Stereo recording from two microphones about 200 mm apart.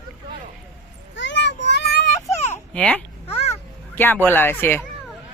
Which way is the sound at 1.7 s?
55° left (ahead or behind).